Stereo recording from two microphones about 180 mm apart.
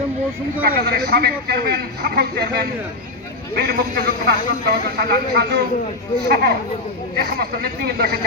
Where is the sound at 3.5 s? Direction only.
55° right (ahead or behind).